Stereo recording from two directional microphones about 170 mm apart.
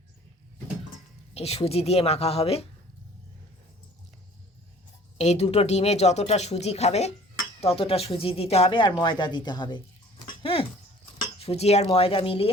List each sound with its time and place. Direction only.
1.3 s speech: 35° left (ahead or behind)
5.1 s speech: 40° left (ahead or behind); by 9.8 s 25° left (ahead or behind)
10.2 s a sound: 35° left (ahead or behind)
11.3 s speech: 35° left (ahead or behind)